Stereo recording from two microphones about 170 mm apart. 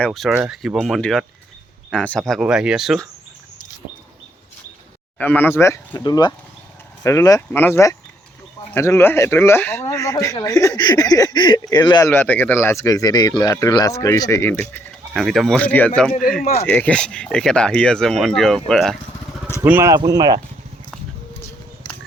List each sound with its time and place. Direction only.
0.0 s speech: centre (ahead or behind)
5.1 s speech: 10° left (ahead or behind)
15.1 s speech: centre (ahead or behind)
19.6 s speech: 15° right (ahead or behind)
21.8 s a sound: 30° left (ahead or behind)